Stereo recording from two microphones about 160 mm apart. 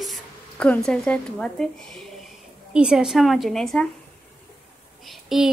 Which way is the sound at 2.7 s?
5° right (ahead or behind).